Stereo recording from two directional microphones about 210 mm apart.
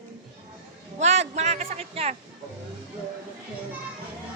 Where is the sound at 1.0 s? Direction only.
30° right (ahead or behind).